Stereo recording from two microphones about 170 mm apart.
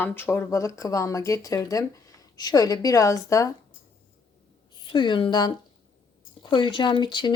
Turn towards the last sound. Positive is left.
turn(degrees=25)  # may be behind; listen again after turning